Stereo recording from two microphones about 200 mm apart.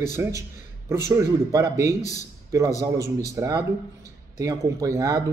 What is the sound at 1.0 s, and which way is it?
A man's voice, 15° right (ahead or behind).